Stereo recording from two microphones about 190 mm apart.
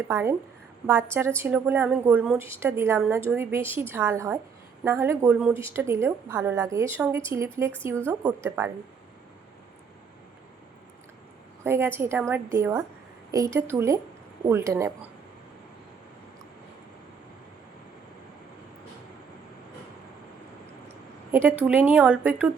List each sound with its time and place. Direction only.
0.1 s a woman's voice: 15° right (ahead or behind)
11.6 s a woman's voice: 10° right (ahead or behind)
21.6 s a woman's voice: 10° right (ahead or behind)